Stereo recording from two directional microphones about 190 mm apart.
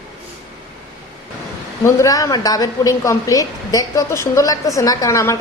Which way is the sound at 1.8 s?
15° left (ahead or behind).